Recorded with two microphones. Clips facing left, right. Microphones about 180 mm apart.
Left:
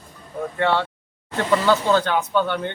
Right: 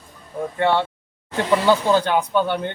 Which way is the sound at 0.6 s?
15° right (ahead or behind).